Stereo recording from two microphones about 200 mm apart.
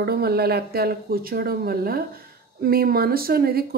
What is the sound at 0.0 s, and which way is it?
Speech, 50° right (ahead or behind).